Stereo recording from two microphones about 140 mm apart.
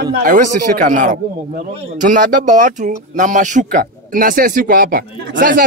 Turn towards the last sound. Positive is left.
turn(degrees=-80)